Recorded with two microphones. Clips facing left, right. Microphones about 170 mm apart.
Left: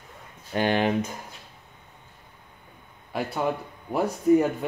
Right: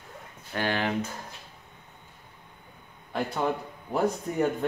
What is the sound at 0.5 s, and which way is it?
Speech, 20° left (ahead or behind).